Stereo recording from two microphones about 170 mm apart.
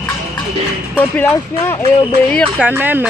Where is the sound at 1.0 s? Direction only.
10° left (ahead or behind).